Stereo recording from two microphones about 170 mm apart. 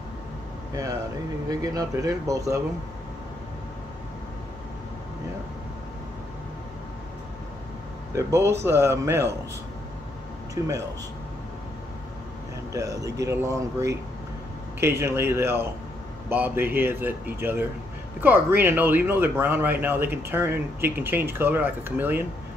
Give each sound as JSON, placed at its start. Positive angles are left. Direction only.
{"t": 1.5, "sound": "speech", "side_deg": -20}
{"t": 8.1, "sound": "speech", "side_deg": -15}
{"t": 10.6, "sound": "speech", "side_deg": -15}
{"t": 12.7, "sound": "speech", "side_deg": -20}